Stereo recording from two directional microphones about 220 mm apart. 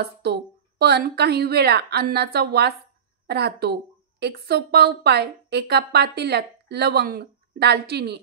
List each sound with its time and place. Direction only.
0.0 s a woman's voice: 45° right (ahead or behind)